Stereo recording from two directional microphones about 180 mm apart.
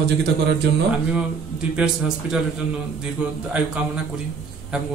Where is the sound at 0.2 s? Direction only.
70° right (ahead or behind).